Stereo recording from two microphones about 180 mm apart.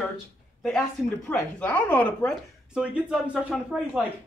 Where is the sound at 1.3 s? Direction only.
10° left (ahead or behind).